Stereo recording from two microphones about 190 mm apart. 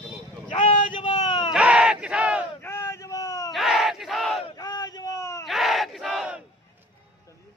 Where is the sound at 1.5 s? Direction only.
5° right (ahead or behind).